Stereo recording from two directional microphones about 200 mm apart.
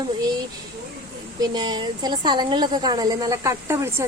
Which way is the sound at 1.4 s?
20° right (ahead or behind).